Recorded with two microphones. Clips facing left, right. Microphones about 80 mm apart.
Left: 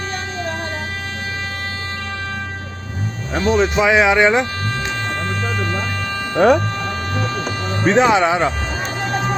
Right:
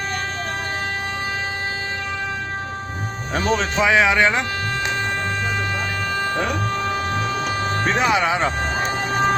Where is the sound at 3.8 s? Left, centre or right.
Centre.